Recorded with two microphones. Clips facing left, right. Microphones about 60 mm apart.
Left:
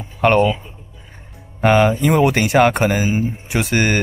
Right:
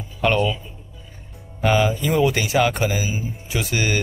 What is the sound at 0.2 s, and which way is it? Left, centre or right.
Speech, left.